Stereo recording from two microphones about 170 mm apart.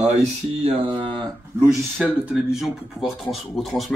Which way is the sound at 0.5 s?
35° right (ahead or behind).